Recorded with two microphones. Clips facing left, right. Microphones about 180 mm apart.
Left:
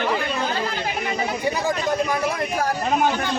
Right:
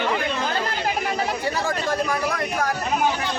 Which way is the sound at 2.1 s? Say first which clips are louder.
Left 1 dB; 30° left (ahead or behind).